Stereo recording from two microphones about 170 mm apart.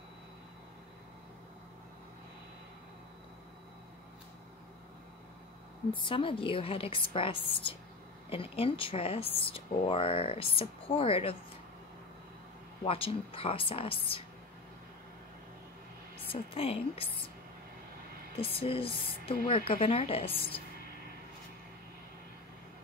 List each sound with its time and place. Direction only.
6.0 s speech: 30° left (ahead or behind)
12.8 s speech: 35° left (ahead or behind)
16.3 s speech: 35° left (ahead or behind)
18.4 s speech: 35° left (ahead or behind)